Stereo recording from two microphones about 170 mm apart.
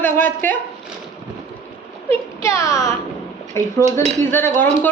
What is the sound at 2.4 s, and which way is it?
A woman's voice, 20° left (ahead or behind).